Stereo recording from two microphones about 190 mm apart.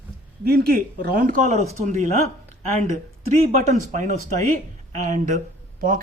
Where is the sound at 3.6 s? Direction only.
40° right (ahead or behind).